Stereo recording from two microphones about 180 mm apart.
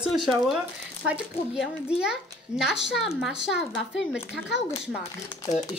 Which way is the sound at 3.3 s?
80° left.